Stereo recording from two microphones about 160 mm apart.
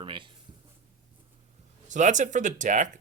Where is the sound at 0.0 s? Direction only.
30° right (ahead or behind).